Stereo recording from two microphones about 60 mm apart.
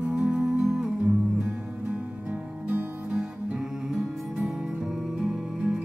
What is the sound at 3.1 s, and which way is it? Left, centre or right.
Music, centre.